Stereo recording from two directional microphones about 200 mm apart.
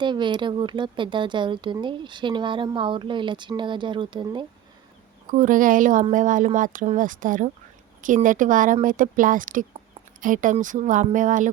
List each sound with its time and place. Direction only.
0.0 s speech: 25° right (ahead or behind)
5.3 s speech: 40° right (ahead or behind)